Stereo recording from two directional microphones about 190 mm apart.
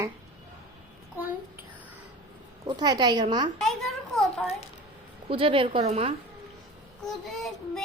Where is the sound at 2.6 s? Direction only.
20° right (ahead or behind).